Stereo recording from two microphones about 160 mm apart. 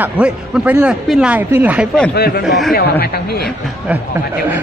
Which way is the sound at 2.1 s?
75° left (ahead or behind).